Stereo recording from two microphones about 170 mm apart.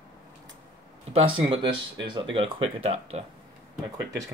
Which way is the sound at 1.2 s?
30° right (ahead or behind).